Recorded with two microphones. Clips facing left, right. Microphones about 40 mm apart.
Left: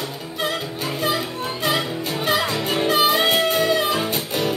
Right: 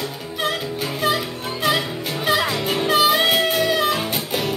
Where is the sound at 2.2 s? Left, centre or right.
Centre.